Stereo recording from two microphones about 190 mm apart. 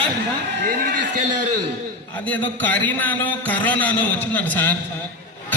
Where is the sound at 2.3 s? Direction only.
10° left (ahead or behind).